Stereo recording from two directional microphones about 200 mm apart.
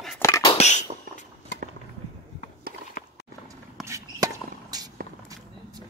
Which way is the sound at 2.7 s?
50° right (ahead or behind).